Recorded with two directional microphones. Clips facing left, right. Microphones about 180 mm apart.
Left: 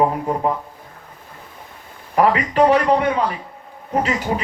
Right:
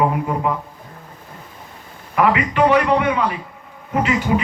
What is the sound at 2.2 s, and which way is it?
Speech, 35° left (ahead or behind).